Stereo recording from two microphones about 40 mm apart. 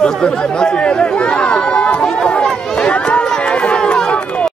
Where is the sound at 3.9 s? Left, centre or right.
Centre.